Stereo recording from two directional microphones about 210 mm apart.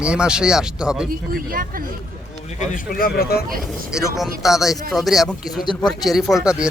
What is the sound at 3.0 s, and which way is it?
Speech, 45° left (ahead or behind).